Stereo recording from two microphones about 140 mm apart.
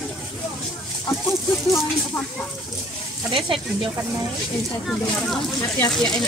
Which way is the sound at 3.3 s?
35° right (ahead or behind).